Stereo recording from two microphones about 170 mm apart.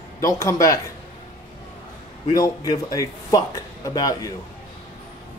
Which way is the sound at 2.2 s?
20° left (ahead or behind).